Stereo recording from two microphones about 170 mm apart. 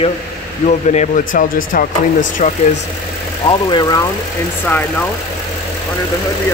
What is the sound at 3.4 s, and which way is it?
Speech, 25° left (ahead or behind).